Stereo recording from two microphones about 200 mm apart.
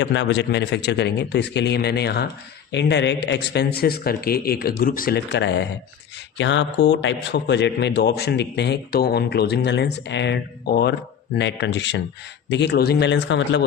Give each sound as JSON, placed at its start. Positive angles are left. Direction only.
{"t": 0.0, "sound": "a man's voice", "side_deg": 60}